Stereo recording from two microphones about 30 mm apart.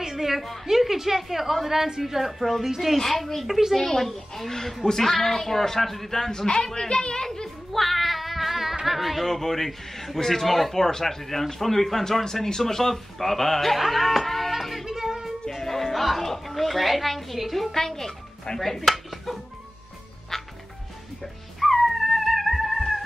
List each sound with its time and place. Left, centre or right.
0.0 s a sound: centre
0.7 s a woman's voice: centre
3.0 s a woman's voice: centre
3.7 s a man's voice: centre
6.4 s a man's voice: left
7.2 s a sound: centre
8.8 s music: centre
9.2 s a man's voice: centre
13.7 s music: centre
14.9 s music: centre
15.5 s a woman's voice: centre
17.7 s a man's voice: centre
21.2 s music: centre